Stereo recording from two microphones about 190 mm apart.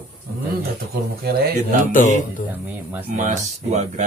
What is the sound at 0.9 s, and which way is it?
Speech, 55° right (ahead or behind).